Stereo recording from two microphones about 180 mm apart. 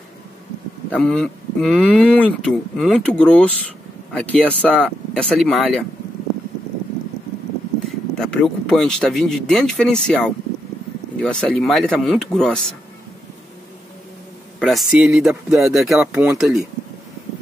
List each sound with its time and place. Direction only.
0.9 s speech: 5° left (ahead or behind)
8.1 s speech: 5° left (ahead or behind)
14.6 s speech: centre (ahead or behind)